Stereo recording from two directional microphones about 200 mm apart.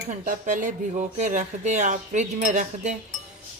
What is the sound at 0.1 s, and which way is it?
Speech, 40° right (ahead or behind).